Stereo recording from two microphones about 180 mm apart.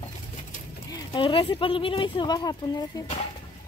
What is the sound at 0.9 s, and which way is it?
Speech, 25° left (ahead or behind).